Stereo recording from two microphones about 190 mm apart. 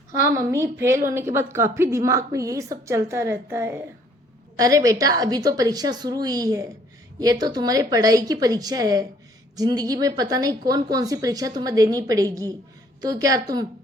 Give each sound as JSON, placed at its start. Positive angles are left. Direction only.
{"t": 0.1, "sound": "a woman's voice", "side_deg": -15}